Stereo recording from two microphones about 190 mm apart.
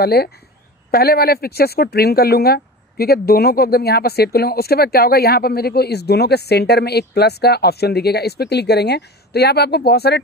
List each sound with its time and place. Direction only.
0.0 s speech: 55° left (ahead or behind)